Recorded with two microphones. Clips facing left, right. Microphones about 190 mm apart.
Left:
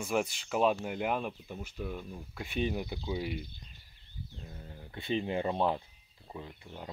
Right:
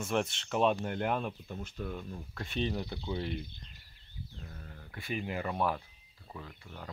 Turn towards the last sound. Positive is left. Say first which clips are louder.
# left 2 dB
turn(degrees=20)  # may be behind; listen again after turning